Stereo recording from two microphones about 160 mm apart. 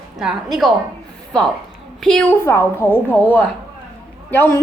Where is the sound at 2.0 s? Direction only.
Centre (ahead or behind).